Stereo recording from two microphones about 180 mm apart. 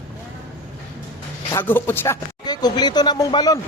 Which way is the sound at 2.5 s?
20° left (ahead or behind).